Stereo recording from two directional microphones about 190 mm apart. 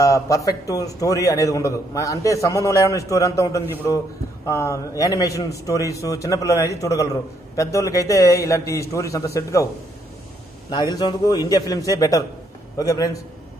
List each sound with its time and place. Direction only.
0.0 s a man's voice: 15° left (ahead or behind)
10.7 s a man's voice: 20° left (ahead or behind)